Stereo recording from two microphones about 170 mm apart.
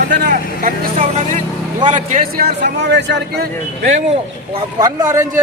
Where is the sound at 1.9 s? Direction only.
45° right (ahead or behind); by 3.5 s 80° right.